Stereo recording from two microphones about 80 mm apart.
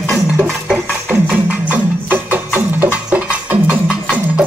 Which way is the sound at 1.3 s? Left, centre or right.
Right.